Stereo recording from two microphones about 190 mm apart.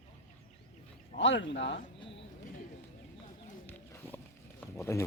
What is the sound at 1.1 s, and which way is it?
Speech, 70° left (ahead or behind).